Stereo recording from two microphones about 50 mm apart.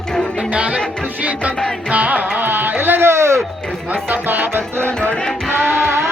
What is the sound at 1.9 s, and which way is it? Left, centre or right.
Music, right.